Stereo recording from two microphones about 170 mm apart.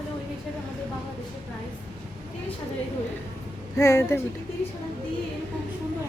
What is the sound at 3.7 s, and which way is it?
Speech, 15° left (ahead or behind).